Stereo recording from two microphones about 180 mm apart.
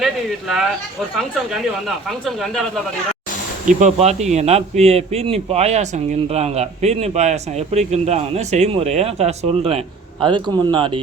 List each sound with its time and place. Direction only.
0.0 s speech: centre (ahead or behind)
3.7 s a man's voice: 40° right (ahead or behind)